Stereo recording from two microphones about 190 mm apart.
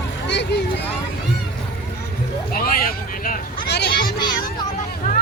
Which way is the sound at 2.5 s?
50° left (ahead or behind).